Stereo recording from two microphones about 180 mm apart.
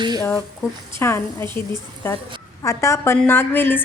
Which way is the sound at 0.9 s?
15° left (ahead or behind).